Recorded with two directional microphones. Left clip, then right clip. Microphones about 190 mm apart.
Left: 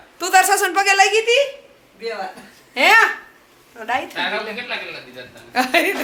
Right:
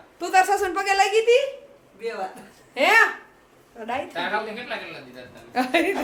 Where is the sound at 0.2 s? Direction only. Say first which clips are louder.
Left 5 dB; 5° left (ahead or behind).